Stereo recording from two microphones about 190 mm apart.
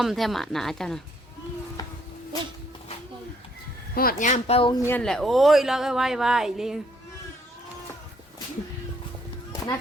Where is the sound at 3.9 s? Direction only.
45° left (ahead or behind).